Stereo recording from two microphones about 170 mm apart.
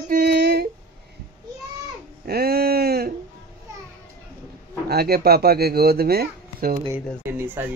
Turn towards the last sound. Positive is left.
turn(degrees=-15)  # may be behind; listen again after turning